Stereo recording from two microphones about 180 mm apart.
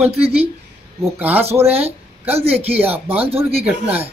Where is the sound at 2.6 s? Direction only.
10° right (ahead or behind).